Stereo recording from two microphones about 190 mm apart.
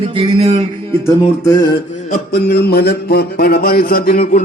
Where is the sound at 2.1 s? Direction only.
60° left (ahead or behind).